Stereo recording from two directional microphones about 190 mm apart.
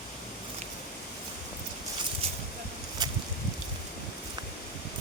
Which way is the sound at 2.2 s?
30° right (ahead or behind).